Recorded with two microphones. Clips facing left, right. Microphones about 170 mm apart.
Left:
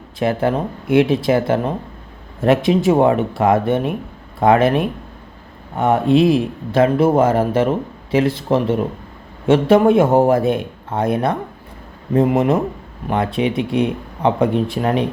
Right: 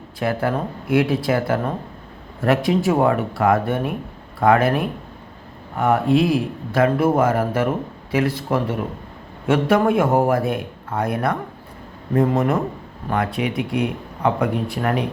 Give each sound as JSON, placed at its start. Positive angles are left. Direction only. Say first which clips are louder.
{"t": 0.2, "sound": "speech", "louder": "left 4 dB", "side_deg": 25}